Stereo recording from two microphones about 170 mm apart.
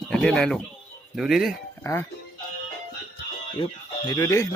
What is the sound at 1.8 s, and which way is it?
Speech, 15° left (ahead or behind).